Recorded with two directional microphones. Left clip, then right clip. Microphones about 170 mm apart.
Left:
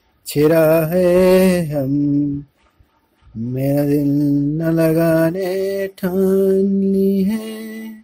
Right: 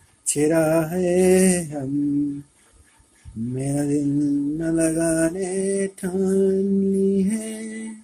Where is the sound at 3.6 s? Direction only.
40° left (ahead or behind).